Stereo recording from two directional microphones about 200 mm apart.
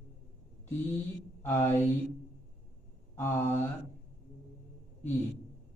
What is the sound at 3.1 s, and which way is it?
Mantra, 10° left (ahead or behind).